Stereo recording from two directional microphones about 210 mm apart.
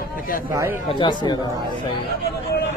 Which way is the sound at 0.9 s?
20° left (ahead or behind).